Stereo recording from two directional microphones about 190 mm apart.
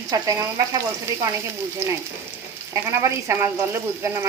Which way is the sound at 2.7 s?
15° right (ahead or behind).